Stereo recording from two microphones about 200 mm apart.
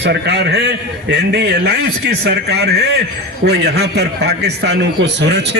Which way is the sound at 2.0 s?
55° right (ahead or behind).